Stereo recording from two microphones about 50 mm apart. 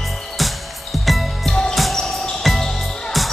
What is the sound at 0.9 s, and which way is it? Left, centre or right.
Music, centre.